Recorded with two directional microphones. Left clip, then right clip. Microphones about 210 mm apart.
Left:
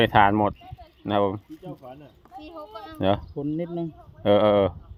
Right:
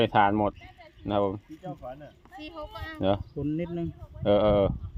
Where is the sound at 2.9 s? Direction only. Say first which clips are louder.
Left 3 dB; 20° left (ahead or behind).